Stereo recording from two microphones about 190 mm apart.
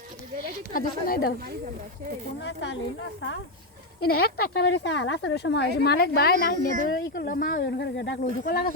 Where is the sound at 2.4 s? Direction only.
75° left (ahead or behind).